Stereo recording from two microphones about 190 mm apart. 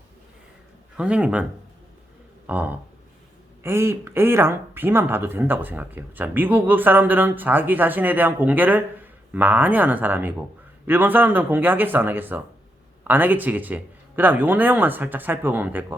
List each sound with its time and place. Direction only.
0.9 s speech: 5° right (ahead or behind)
2.5 s speech: 10° right (ahead or behind)